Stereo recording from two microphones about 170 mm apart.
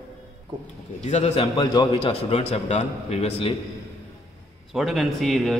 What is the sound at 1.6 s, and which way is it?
Speech, 20° left (ahead or behind).